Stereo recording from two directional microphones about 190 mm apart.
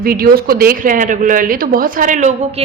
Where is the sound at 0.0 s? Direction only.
50° right (ahead or behind).